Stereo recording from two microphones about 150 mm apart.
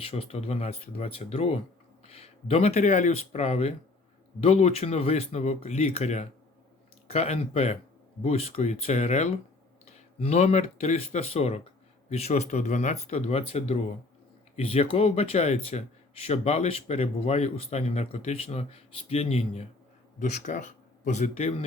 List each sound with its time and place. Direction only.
0.0 s speech: 40° left (ahead or behind)
20.1 s speech: 55° left (ahead or behind)